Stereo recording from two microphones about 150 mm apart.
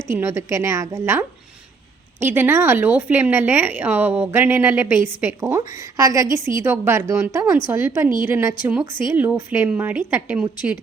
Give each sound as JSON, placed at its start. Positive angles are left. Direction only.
{"t": 0.1, "sound": "a woman's voice", "side_deg": -15}
{"t": 2.2, "sound": "a woman's voice", "side_deg": -15}